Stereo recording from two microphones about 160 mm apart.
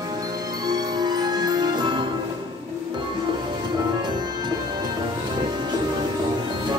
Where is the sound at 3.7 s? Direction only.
30° right (ahead or behind).